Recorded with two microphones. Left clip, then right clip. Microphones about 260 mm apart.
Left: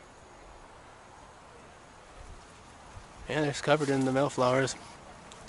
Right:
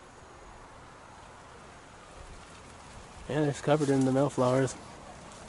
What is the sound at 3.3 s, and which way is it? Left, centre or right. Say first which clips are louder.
Speech: left 1 dB; centre.